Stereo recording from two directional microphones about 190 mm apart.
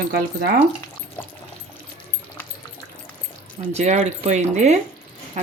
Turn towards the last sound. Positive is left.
turn(degrees=-35)  # may be behind; listen again after turning